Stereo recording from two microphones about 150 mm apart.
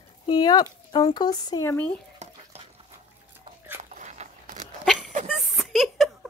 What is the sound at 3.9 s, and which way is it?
Walk, 55° right (ahead or behind).